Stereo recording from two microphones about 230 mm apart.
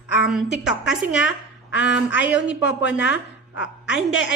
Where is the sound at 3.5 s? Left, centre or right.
Left.